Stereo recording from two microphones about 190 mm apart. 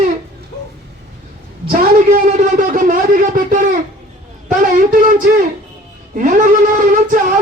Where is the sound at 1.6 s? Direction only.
45° right (ahead or behind).